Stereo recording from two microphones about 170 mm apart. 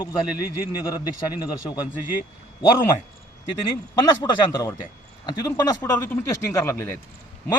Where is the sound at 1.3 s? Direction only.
25° left (ahead or behind).